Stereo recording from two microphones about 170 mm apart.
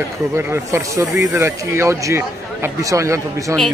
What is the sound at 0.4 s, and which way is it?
Speech, 15° right (ahead or behind).